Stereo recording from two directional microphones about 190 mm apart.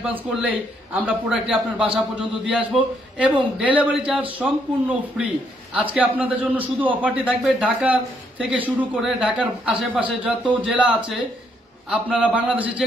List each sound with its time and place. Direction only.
0.0 s a man's voice: 5° right (ahead or behind)
11.9 s a man's voice: 5° right (ahead or behind)